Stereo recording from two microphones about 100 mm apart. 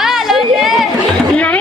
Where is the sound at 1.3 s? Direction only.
15° left (ahead or behind).